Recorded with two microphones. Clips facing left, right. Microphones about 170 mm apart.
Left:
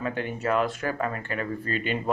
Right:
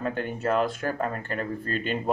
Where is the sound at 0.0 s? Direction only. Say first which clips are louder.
Right 1 dB; 45° right (ahead or behind).